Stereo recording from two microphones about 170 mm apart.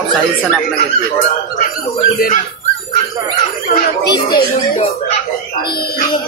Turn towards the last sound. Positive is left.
turn(degrees=30)  # may be behind; listen again after turning